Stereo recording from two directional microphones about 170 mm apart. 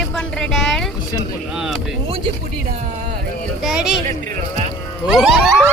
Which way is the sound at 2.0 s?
35° right (ahead or behind).